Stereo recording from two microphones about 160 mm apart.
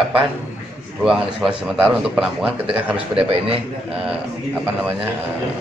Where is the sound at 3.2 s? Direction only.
35° right (ahead or behind).